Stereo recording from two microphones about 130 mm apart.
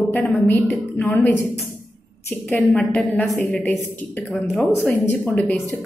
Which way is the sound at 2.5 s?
15° left (ahead or behind).